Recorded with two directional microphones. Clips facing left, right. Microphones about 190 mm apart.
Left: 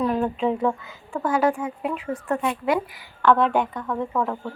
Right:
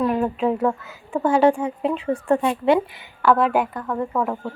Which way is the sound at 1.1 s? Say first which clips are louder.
Right 5 dB; 30° right (ahead or behind).